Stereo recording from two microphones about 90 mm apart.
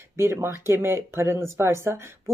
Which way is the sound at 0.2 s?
30° right (ahead or behind).